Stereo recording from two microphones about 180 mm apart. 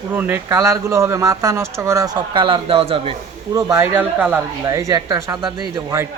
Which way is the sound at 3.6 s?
10° right (ahead or behind).